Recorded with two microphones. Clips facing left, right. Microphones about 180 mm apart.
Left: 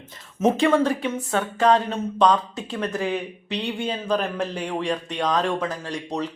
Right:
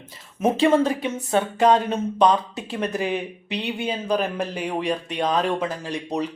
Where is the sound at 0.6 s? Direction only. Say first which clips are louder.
Right 1 dB; 20° right (ahead or behind).